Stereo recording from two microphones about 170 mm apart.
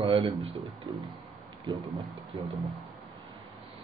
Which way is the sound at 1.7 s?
30° right (ahead or behind).